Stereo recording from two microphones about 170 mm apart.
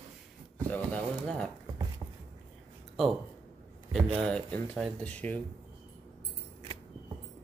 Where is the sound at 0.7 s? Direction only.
5° left (ahead or behind).